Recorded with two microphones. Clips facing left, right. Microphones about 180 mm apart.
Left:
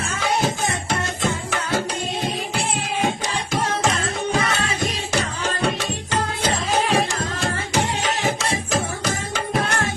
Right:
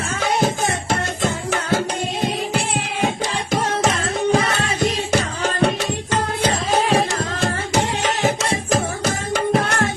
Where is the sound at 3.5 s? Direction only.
45° right (ahead or behind).